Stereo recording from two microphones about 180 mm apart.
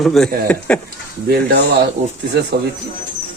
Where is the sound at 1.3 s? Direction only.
60° right (ahead or behind).